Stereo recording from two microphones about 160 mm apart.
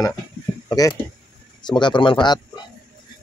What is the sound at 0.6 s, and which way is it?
Speech, 20° left (ahead or behind).